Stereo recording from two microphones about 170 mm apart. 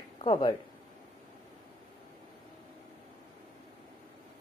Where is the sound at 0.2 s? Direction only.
30° left (ahead or behind).